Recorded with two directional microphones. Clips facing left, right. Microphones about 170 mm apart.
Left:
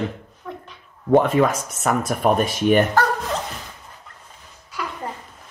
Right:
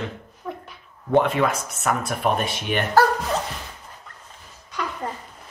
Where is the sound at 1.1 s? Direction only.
45° left (ahead or behind).